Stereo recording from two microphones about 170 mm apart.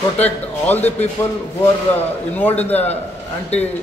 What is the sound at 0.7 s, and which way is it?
A man's voice, 10° left (ahead or behind).